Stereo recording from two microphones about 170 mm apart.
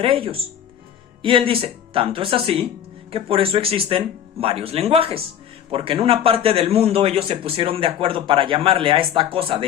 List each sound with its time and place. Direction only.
0.0 s a man's voice: 30° right (ahead or behind)